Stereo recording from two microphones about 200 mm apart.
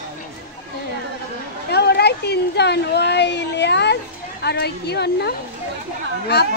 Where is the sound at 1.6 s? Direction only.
55° left (ahead or behind).